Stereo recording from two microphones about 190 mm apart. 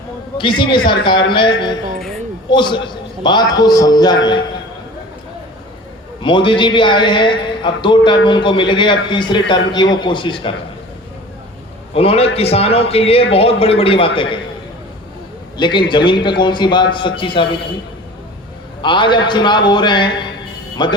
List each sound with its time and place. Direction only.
0.3 s a man's voice: 25° left (ahead or behind)
6.2 s a man's voice: 25° left (ahead or behind)
11.9 s a man's voice: 30° left (ahead or behind)
15.5 s a man's voice: 25° left (ahead or behind)
18.8 s a man's voice: 25° left (ahead or behind)